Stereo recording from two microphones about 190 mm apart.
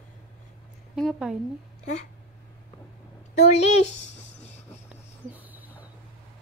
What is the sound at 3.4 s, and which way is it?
Speech, 35° left (ahead or behind).